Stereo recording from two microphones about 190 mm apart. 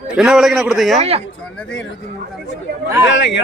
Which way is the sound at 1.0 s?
30° right (ahead or behind).